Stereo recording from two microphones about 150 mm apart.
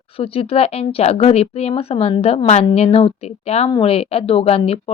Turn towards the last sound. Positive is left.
turn(degrees=40)  # may be behind; listen again after turning